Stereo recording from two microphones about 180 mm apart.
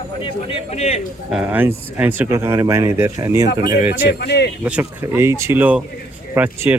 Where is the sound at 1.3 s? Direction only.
10° right (ahead or behind).